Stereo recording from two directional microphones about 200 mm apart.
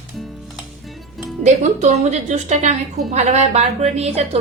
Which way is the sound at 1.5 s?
35° right (ahead or behind).